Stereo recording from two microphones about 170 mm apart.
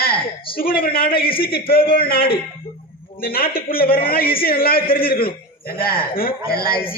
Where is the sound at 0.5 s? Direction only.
60° left (ahead or behind).